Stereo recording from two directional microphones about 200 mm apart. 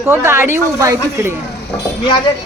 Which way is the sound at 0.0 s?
15° right (ahead or behind).